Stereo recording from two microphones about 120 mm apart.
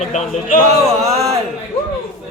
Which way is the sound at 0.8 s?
25° right (ahead or behind).